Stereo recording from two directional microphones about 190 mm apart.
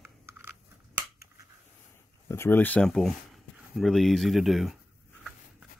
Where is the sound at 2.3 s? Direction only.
10° left (ahead or behind).